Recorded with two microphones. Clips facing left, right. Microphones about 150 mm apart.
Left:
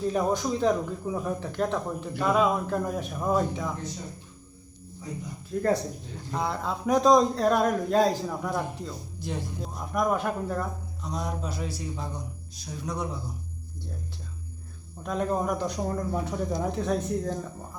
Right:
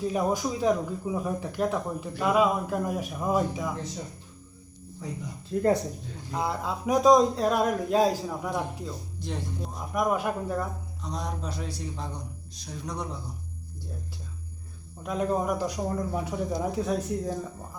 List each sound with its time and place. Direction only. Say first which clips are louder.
0.1 s speech: left 2 dB; 5° right (ahead or behind)
5.5 s speech: right 2 dB; 30° right (ahead or behind)
6.3 s speech: even; 5° right (ahead or behind)
10.0 s speech: even; 10° right (ahead or behind)
11.0 s speech: left 2 dB; 5° left (ahead or behind)
15.0 s speech: even; 5° right (ahead or behind)